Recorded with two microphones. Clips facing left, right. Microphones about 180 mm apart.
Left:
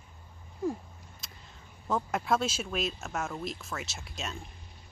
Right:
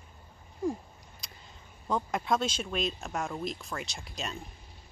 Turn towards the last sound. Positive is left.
turn(degrees=0)  # may be behind; listen again after turning